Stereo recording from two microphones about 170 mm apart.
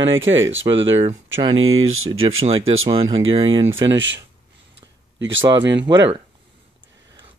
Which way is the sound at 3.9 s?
90° right.